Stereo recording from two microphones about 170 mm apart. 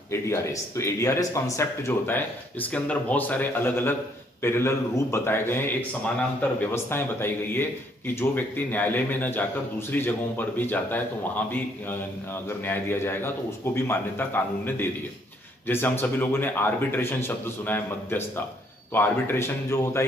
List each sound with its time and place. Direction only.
0.1 s a man's voice: 15° left (ahead or behind)